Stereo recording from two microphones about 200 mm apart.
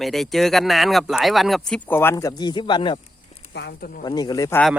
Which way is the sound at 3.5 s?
60° left (ahead or behind).